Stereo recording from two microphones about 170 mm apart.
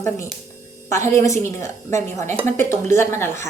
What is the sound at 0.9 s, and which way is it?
Speech, 15° left (ahead or behind).